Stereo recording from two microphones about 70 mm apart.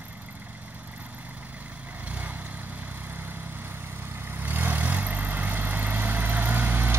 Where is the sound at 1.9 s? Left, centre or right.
Right.